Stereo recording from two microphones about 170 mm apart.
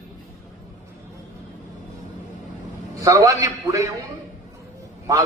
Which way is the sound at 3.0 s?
20° right (ahead or behind).